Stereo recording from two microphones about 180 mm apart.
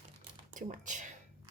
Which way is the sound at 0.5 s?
45° right (ahead or behind).